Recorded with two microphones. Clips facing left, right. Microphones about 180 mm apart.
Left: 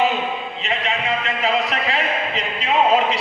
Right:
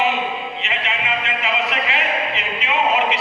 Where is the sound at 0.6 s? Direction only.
35° left (ahead or behind).